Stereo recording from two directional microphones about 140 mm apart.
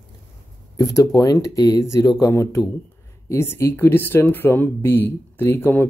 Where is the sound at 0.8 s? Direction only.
25° left (ahead or behind).